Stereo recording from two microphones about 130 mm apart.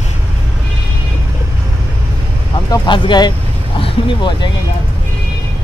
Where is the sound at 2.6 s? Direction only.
35° left (ahead or behind).